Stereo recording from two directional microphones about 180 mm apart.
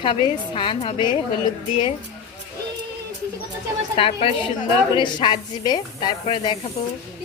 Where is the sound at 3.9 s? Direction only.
30° left (ahead or behind).